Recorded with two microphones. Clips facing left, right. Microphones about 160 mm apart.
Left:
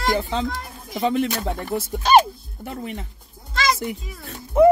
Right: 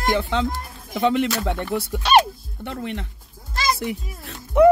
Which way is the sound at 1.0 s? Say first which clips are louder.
Right 1 dB; 75° right (ahead or behind).